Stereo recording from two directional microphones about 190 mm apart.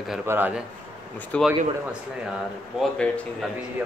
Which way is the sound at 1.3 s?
5° left (ahead or behind).